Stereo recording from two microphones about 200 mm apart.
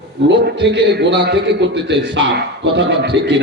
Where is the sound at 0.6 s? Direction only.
60° right (ahead or behind).